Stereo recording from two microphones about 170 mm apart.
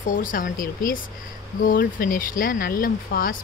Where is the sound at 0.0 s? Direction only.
50° left (ahead or behind).